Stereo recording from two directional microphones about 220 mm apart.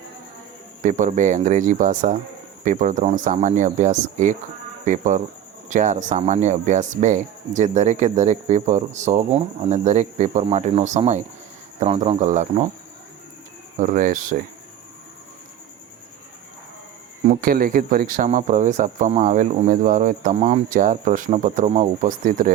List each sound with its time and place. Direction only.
0.8 s speech: 35° right (ahead or behind)
13.7 s speech: 35° right (ahead or behind)
17.2 s speech: 40° right (ahead or behind)